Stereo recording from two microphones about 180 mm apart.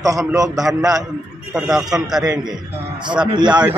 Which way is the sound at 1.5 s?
5° right (ahead or behind).